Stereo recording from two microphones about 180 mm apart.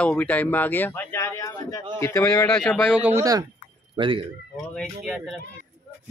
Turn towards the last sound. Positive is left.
turn(degrees=0)  # may be behind; listen again after turning